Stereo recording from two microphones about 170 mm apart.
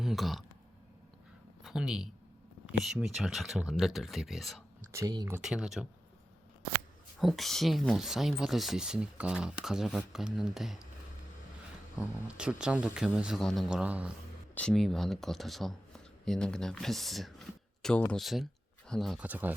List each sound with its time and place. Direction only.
0.0 s speech: centre (ahead or behind)
1.6 s speech: 5° right (ahead or behind)
4.9 s speech: 20° right (ahead or behind)
5.4 s speech: 5° right (ahead or behind)
7.2 s speech: centre (ahead or behind)
11.9 s speech: 5° right (ahead or behind)
14.5 s speech: 5° left (ahead or behind)